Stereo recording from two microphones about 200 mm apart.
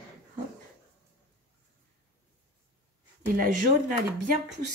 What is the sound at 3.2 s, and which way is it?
Speech, 45° right (ahead or behind).